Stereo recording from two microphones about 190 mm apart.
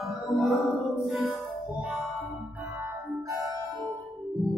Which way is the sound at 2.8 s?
15° right (ahead or behind).